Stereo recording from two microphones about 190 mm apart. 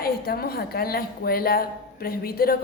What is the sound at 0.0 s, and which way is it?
Speech, 55° left (ahead or behind).